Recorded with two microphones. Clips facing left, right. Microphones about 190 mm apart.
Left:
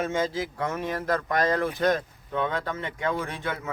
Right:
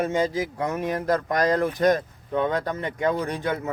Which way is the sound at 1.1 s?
40° right (ahead or behind).